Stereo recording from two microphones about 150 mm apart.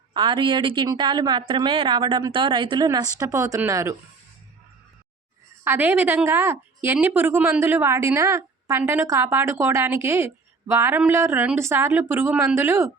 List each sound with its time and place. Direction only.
0.1 s a woman's voice: 35° right (ahead or behind)
5.6 s a woman's voice: 15° right (ahead or behind)